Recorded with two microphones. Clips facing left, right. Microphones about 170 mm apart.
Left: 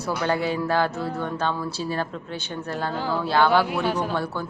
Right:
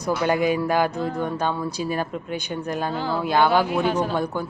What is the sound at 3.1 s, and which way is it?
Speech, 15° right (ahead or behind).